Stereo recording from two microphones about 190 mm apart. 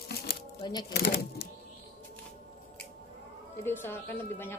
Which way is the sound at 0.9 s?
55° left (ahead or behind).